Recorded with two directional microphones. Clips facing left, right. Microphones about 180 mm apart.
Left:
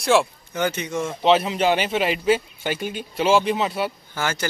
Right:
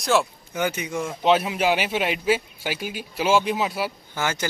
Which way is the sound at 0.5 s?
15° right (ahead or behind).